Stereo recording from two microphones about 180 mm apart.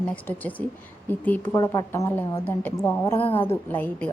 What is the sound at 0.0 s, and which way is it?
A woman's voice, 10° left (ahead or behind).